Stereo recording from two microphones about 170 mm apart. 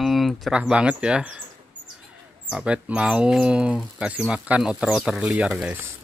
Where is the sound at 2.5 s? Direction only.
5° right (ahead or behind).